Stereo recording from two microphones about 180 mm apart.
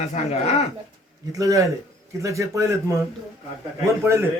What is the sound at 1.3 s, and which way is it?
Speech, 20° right (ahead or behind).